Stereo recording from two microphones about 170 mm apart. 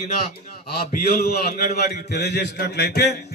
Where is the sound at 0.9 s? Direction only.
65° left (ahead or behind).